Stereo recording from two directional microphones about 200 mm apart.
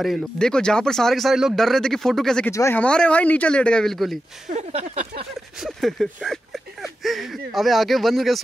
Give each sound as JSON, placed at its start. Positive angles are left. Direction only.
{"t": 0.0, "sound": "speech", "side_deg": 0}
{"t": 4.5, "sound": "speech", "side_deg": -35}
{"t": 5.6, "sound": "speech", "side_deg": 0}